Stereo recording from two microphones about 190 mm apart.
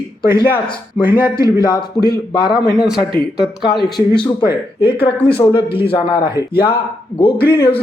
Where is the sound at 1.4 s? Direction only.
20° left (ahead or behind).